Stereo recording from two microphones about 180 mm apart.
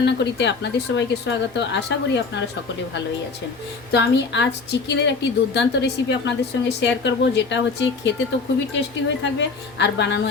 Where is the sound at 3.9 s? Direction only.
75° left (ahead or behind).